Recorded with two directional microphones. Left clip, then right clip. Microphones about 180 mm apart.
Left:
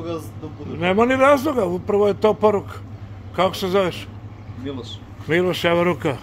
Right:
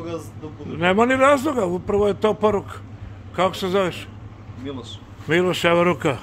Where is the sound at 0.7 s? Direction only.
15° right (ahead or behind).